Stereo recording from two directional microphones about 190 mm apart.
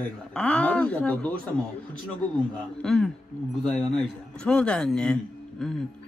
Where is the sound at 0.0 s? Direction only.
5° left (ahead or behind).